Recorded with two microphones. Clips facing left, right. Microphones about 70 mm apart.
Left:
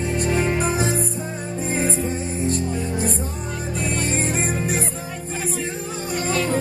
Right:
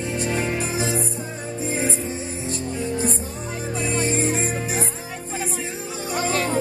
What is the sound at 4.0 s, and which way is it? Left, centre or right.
Music, left.